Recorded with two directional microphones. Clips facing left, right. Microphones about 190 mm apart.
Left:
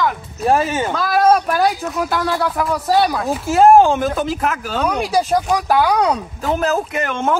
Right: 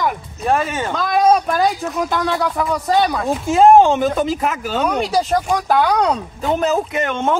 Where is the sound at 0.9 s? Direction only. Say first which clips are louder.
Right 1 dB; 5° left (ahead or behind).